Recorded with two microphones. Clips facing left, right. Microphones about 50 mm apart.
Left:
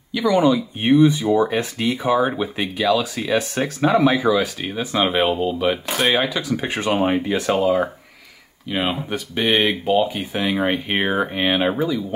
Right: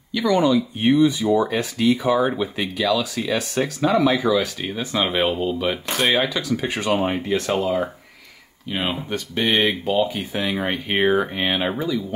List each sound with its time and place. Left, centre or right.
0.1 s speech: centre
0.7 s speech: left
2.3 s speech: centre
4.3 s speech: centre
6.1 s speech: centre
7.1 s speech: centre